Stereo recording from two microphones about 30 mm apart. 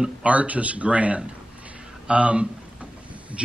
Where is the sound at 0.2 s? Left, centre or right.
Right.